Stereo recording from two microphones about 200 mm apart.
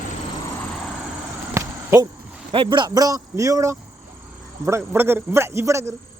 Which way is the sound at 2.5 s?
25° right (ahead or behind).